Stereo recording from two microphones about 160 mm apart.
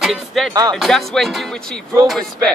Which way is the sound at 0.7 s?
Centre (ahead or behind).